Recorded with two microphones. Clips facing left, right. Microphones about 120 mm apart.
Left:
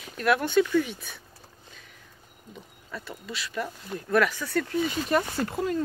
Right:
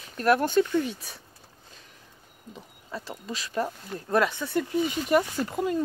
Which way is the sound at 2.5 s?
30° right (ahead or behind).